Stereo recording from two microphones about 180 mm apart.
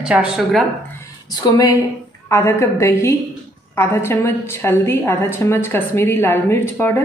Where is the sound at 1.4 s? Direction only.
20° left (ahead or behind).